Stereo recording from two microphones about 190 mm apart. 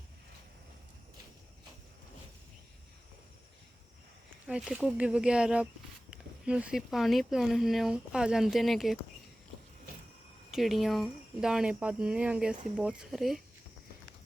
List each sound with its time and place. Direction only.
4.4 s speech: 5° right (ahead or behind)
10.5 s speech: centre (ahead or behind)